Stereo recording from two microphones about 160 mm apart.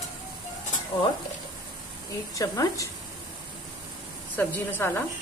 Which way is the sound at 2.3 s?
20° left (ahead or behind).